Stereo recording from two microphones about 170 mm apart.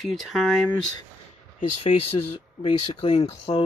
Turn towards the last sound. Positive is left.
turn(degrees=35)  # may be behind; listen again after turning